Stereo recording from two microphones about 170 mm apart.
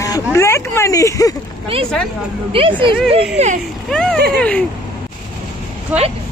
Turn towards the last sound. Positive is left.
turn(degrees=-10)  # may be behind; listen again after turning